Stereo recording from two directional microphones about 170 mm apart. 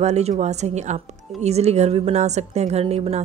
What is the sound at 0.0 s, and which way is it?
A woman's voice, 40° right (ahead or behind).